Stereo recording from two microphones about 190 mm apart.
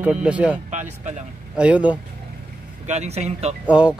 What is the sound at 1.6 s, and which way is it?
Speech, 5° right (ahead or behind).